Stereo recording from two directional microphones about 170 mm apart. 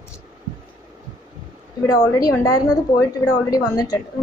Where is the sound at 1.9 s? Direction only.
20° left (ahead or behind).